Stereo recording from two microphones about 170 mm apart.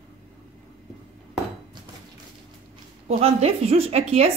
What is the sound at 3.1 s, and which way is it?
A woman's voice, 35° right (ahead or behind).